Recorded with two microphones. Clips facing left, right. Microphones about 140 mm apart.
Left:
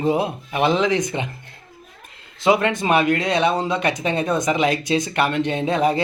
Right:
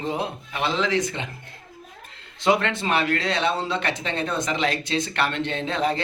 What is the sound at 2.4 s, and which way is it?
Speech, 10° left (ahead or behind).